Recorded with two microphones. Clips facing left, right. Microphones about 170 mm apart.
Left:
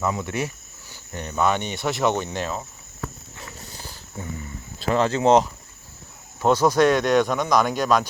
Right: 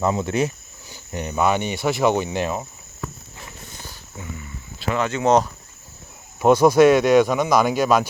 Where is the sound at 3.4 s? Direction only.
35° left (ahead or behind).